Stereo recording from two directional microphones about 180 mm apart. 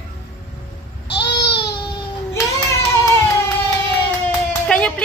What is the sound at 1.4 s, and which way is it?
Baby cry, 25° left (ahead or behind).